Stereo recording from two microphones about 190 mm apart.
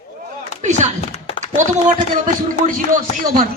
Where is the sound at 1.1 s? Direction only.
30° left (ahead or behind).